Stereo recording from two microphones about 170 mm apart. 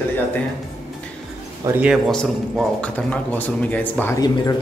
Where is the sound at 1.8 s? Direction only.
5° right (ahead or behind); by 4.2 s 10° left (ahead or behind).